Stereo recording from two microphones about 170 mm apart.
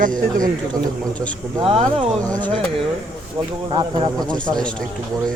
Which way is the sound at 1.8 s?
5° left (ahead or behind).